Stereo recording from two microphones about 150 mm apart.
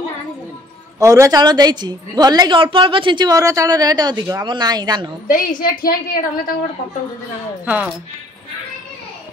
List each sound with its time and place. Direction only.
0.9 s a woman's voice: 20° right (ahead or behind)
5.3 s a woman's voice: 70° left (ahead or behind)
7.6 s speech: 10° right (ahead or behind)